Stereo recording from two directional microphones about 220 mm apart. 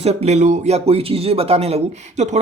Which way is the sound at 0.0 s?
30° right (ahead or behind).